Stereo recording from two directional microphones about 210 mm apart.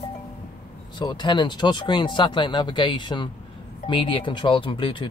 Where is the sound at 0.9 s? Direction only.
20° left (ahead or behind).